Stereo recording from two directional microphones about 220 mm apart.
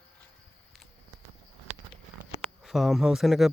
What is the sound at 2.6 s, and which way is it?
Speech, centre (ahead or behind).